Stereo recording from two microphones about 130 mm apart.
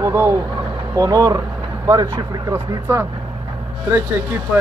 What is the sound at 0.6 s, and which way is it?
Vehicle, 25° right (ahead or behind).